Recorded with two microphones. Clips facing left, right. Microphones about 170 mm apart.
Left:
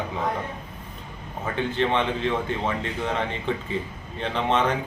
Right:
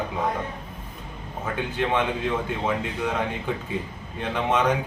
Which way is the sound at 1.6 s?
10° right (ahead or behind).